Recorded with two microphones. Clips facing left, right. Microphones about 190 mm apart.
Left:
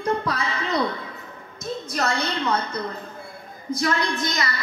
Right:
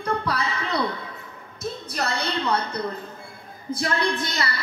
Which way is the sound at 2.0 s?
30° right (ahead or behind).